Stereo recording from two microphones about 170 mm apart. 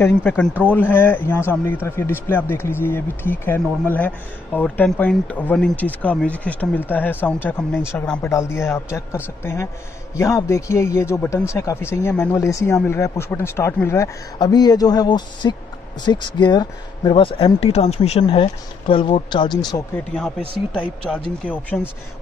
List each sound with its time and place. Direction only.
0.0 s a man's voice: 10° left (ahead or behind)
20.2 s a man's voice: 5° left (ahead or behind)